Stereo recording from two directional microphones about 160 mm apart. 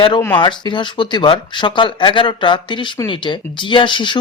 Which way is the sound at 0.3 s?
30° left (ahead or behind).